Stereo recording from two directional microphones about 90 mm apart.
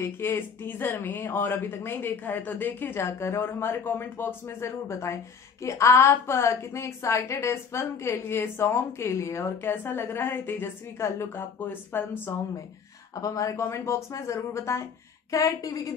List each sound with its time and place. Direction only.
0.0 s speech: 25° left (ahead or behind)
13.1 s speech: 40° left (ahead or behind)